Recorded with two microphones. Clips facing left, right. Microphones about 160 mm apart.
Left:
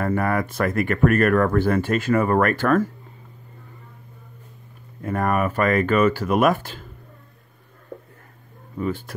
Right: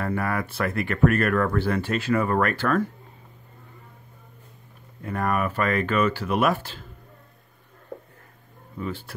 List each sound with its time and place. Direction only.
0.0 s speech: 50° left (ahead or behind)
5.0 s speech: 50° left (ahead or behind)
8.8 s speech: 50° left (ahead or behind)